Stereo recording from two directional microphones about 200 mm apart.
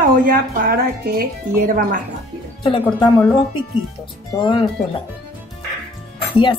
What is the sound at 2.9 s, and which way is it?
Speech, 20° left (ahead or behind).